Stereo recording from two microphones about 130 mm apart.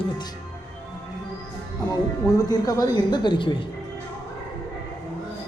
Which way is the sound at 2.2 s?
25° left (ahead or behind).